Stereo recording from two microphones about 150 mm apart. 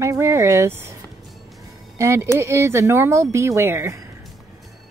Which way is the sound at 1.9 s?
20° right (ahead or behind).